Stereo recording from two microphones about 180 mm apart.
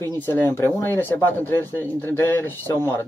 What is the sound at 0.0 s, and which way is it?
Speech, 15° left (ahead or behind).